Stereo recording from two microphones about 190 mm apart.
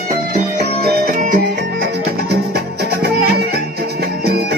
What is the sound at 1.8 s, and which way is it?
Music, 60° right (ahead or behind).